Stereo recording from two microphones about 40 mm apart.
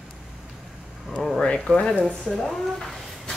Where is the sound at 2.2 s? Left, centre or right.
Centre.